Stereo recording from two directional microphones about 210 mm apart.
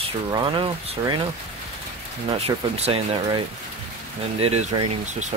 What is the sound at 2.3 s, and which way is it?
Speech, 30° right (ahead or behind).